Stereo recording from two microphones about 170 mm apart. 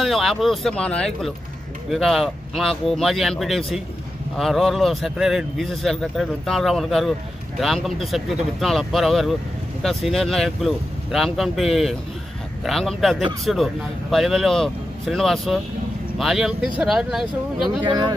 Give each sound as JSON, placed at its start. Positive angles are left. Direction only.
{"t": 0.0, "sound": "speech", "side_deg": 0}
{"t": 17.8, "sound": "speech", "side_deg": -25}